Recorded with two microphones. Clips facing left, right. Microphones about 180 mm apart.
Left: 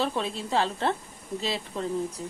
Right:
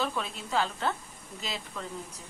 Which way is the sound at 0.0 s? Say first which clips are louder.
Left 4 dB; 30° left (ahead or behind).